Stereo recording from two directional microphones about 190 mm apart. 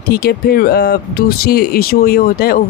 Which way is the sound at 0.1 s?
55° left (ahead or behind).